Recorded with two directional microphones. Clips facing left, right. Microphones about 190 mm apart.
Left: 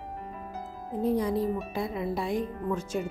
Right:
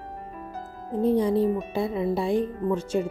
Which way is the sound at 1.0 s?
30° right (ahead or behind).